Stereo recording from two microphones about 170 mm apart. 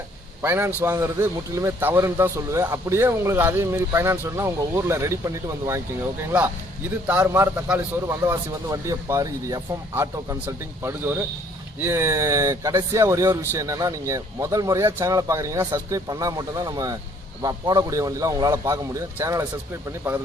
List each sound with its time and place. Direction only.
0.4 s speech: 10° right (ahead or behind)